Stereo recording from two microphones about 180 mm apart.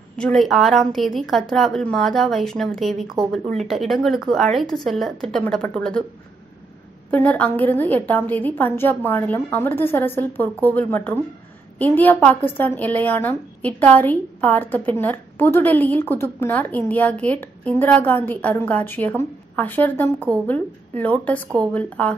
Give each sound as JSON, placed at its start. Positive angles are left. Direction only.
{"t": 0.1, "sound": "a woman's voice", "side_deg": 5}
{"t": 7.1, "sound": "a woman's voice", "side_deg": 10}